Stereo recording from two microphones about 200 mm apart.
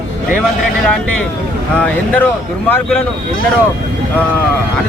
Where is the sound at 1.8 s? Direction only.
10° left (ahead or behind).